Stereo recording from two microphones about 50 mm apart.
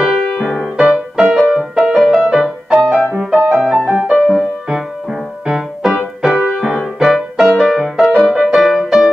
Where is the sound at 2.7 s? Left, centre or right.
Centre.